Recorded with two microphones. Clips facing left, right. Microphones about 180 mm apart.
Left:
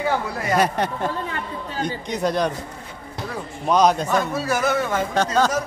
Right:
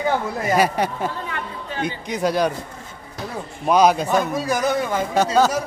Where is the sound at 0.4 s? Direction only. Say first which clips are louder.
Right 2 dB; 5° right (ahead or behind).